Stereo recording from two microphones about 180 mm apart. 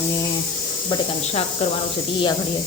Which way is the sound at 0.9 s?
25° left (ahead or behind).